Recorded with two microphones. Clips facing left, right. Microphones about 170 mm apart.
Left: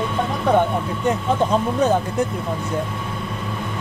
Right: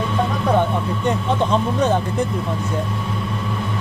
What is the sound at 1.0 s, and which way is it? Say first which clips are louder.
Speech: left 1 dB; 10° left (ahead or behind).